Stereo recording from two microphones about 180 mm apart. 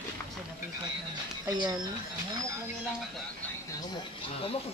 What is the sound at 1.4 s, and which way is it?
Speech, 25° right (ahead or behind).